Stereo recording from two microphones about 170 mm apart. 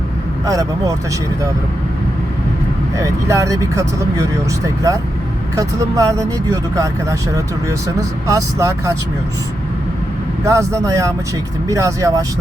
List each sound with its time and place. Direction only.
0.4 s speech: 20° right (ahead or behind)
3.0 s speech: 20° right (ahead or behind)
10.4 s speech: 15° right (ahead or behind)